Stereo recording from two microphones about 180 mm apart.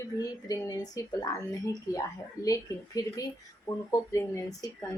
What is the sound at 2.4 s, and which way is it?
A woman's voice, 20° left (ahead or behind).